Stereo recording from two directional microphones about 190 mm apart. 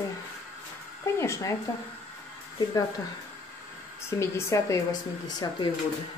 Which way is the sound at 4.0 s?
15° left (ahead or behind).